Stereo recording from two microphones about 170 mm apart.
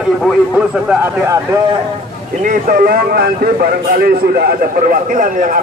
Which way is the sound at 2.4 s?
55° right (ahead or behind).